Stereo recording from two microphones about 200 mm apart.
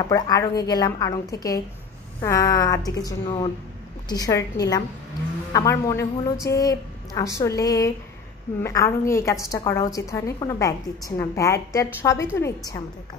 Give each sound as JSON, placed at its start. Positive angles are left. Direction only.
{"t": 0.1, "sound": "a woman's voice", "side_deg": 20}